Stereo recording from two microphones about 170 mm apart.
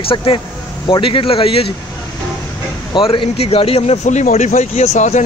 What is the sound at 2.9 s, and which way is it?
A man's voice, 30° left (ahead or behind).